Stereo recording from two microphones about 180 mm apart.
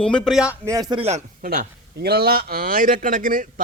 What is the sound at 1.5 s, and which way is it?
Speech, 60° right (ahead or behind).